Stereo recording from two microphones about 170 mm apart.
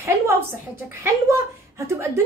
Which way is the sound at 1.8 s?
15° right (ahead or behind).